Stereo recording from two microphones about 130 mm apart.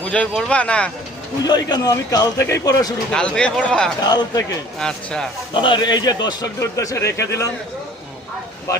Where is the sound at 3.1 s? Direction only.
5° left (ahead or behind).